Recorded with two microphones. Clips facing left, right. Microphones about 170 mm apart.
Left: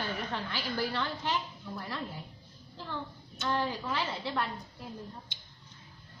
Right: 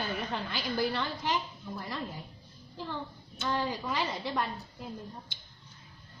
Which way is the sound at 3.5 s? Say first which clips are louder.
Even; 15° right (ahead or behind).